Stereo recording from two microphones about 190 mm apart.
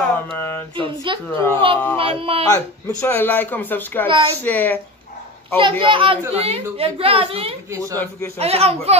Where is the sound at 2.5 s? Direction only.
15° left (ahead or behind).